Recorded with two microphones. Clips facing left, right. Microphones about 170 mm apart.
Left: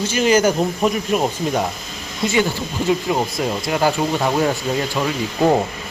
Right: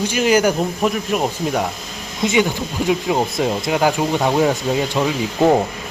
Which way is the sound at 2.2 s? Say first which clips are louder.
Right 2 dB; 15° right (ahead or behind).